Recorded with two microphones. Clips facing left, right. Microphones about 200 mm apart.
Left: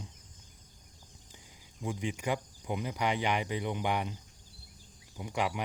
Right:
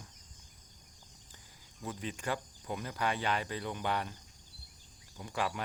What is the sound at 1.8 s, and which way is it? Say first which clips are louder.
Speech: left 4 dB; 15° left (ahead or behind).